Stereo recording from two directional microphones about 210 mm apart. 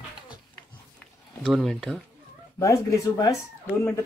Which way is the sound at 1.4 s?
Centre (ahead or behind).